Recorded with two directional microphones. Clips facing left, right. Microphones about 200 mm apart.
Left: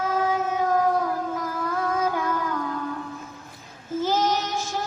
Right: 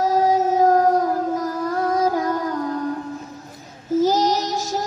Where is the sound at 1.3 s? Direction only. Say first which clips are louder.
Right 5 dB; 40° right (ahead or behind).